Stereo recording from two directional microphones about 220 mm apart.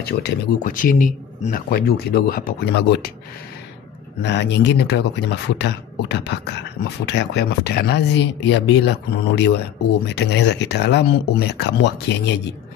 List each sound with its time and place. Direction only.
0.0 s speech: 45° left (ahead or behind)
4.2 s speech: 50° left (ahead or behind)